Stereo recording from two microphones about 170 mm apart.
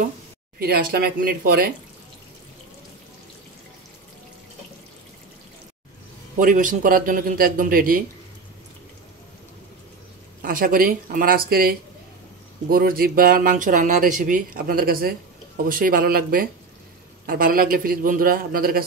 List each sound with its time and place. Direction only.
0.6 s speech: 65° right (ahead or behind)
6.3 s speech: 50° right (ahead or behind)
10.4 s speech: 55° right (ahead or behind)